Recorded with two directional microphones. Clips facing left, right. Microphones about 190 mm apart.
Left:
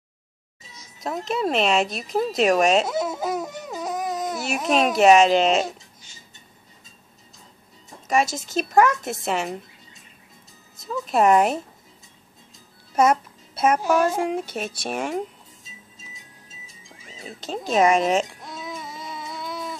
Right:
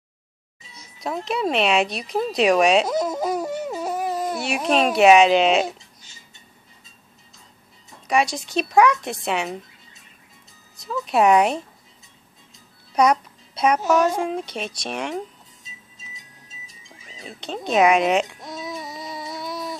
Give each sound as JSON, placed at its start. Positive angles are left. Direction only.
{"t": 1.0, "sound": "a child's voice", "side_deg": 0}
{"t": 8.1, "sound": "a child's voice", "side_deg": 0}
{"t": 10.8, "sound": "a child's voice", "side_deg": 0}
{"t": 12.9, "sound": "a child's voice", "side_deg": 5}
{"t": 17.4, "sound": "a child's voice", "side_deg": 0}